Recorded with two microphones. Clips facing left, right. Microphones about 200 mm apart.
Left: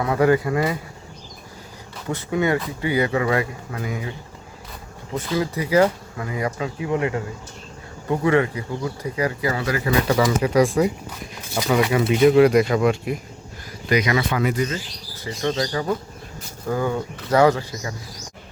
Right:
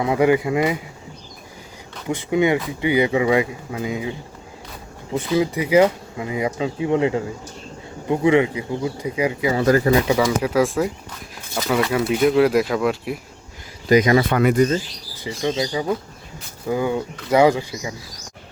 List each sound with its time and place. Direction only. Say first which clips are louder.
0.0 s speech: right 1 dB; 15° right (ahead or behind)
2.0 s speech: right 3 dB; 15° right (ahead or behind)
5.1 s speech: right 4 dB; 15° right (ahead or behind)
9.6 s speech: right 8 dB; 40° right (ahead or behind)
10.2 s speech: left 1 dB; 5° right (ahead or behind)
13.9 s speech: right 6 dB; 40° right (ahead or behind)
14.3 s speech: right 6 dB; 55° right (ahead or behind)
15.2 s speech: right 1 dB; 10° right (ahead or behind)